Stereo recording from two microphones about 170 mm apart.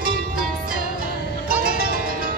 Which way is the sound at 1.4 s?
60° right (ahead or behind).